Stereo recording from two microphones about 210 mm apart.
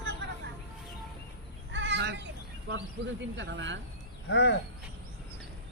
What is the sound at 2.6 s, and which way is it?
Speech, 60° right (ahead or behind).